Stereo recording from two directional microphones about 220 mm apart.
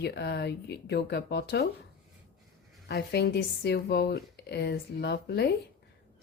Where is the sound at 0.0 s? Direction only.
50° left (ahead or behind).